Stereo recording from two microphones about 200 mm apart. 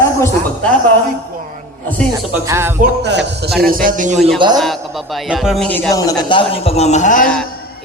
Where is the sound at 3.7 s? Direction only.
45° right (ahead or behind).